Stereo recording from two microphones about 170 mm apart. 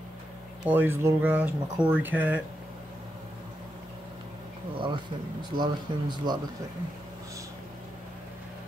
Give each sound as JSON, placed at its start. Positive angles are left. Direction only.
{"t": 0.7, "sound": "speech", "side_deg": -15}
{"t": 4.7, "sound": "speech", "side_deg": -30}